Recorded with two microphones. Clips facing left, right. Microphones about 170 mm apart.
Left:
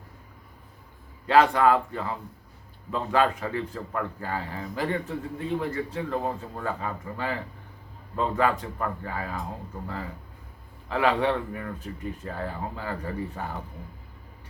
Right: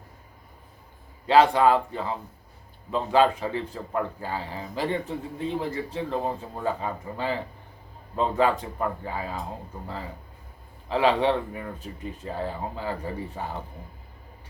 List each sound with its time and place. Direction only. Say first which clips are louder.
1.3 s speech: right 1 dB; 25° right (ahead or behind)
10.8 s speech: right 2 dB; 25° right (ahead or behind)